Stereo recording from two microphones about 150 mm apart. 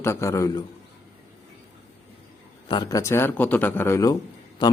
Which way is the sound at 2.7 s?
25° left (ahead or behind).